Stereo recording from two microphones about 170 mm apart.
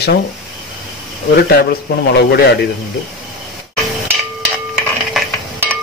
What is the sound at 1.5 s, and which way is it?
Speech, 70° left (ahead or behind).